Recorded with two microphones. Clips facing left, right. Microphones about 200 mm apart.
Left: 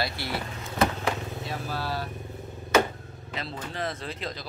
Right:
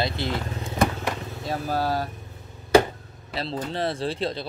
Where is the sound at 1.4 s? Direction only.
45° right (ahead or behind).